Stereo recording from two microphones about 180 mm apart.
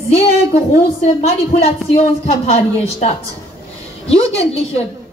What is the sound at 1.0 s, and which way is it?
A woman's voice, 40° left (ahead or behind).